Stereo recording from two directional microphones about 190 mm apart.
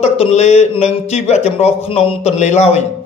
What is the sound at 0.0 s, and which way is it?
Speech, 35° left (ahead or behind).